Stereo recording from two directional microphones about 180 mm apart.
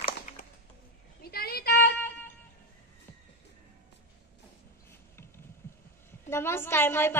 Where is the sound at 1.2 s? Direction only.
60° left (ahead or behind).